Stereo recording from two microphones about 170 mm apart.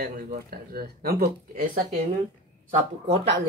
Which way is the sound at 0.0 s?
60° right (ahead or behind).